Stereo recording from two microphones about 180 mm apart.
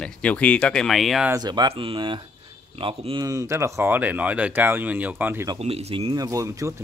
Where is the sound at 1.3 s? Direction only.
25° right (ahead or behind).